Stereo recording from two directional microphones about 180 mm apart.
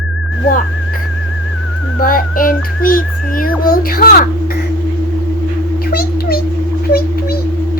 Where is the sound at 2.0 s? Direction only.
50° left (ahead or behind).